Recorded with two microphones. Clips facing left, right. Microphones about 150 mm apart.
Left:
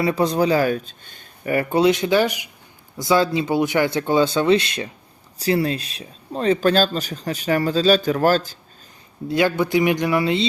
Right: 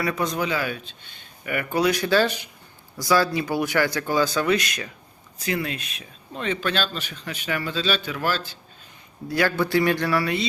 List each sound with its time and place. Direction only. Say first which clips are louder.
0.0 s speech: left 6 dB; 30° left (ahead or behind)
9.3 s speech: left 3 dB; 20° left (ahead or behind)